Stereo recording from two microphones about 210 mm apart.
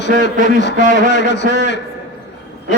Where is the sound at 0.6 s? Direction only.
55° left (ahead or behind).